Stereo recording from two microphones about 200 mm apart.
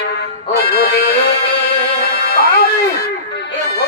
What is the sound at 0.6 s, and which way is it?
Music, 50° left (ahead or behind).